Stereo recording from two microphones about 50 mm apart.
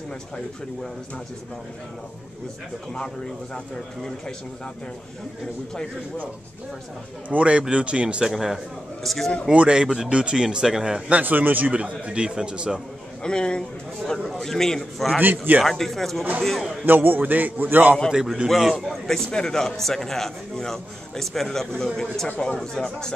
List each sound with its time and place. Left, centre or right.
3.5 s a man's voice: centre
7.2 s a man's voice: right
8.3 s speech: centre
9.5 s speech: centre
11.1 s a man's voice: right
13.2 s a man's voice: centre
14.1 s speech: centre
14.4 s a man's voice: centre
16.8 s a man's voice: right
18.5 s a man's voice: centre